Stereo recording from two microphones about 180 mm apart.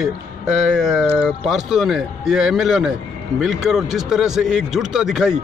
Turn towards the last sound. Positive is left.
turn(degrees=-5)  # may be behind; listen again after turning